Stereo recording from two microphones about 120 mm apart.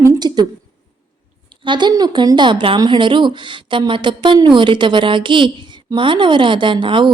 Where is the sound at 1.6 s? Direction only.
40° right (ahead or behind).